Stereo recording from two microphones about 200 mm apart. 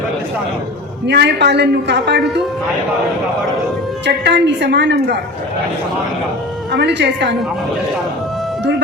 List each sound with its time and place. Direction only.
1.0 s a man's voice: 55° right (ahead or behind)
4.0 s a man's voice: 60° right (ahead or behind)
6.7 s a man's voice: 55° right (ahead or behind)